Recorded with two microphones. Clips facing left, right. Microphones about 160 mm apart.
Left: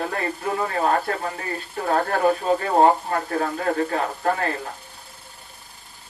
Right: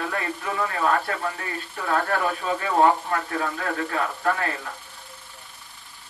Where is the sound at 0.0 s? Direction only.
40° left (ahead or behind).